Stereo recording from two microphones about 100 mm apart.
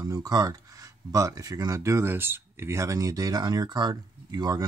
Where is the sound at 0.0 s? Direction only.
35° right (ahead or behind).